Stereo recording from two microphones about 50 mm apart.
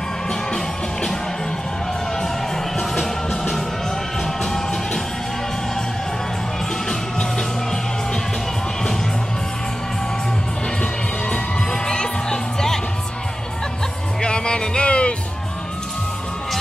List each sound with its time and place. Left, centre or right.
2.8 s music: centre
6.9 s music: centre
10.8 s music: centre
14.2 s music: centre